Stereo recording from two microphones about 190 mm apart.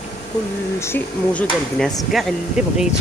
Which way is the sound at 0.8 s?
10° left (ahead or behind).